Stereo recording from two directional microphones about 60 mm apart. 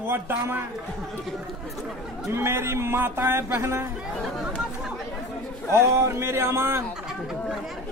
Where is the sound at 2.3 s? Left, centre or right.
Right.